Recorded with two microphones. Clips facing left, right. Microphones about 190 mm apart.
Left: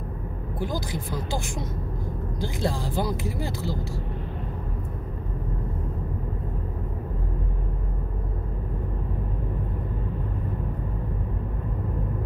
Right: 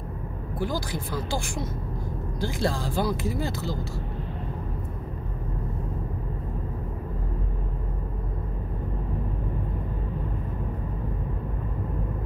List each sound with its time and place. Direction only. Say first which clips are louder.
0.6 s speech: right 1 dB; 15° left (ahead or behind)